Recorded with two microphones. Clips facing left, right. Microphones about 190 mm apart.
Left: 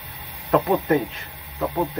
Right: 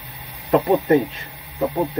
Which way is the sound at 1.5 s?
15° right (ahead or behind).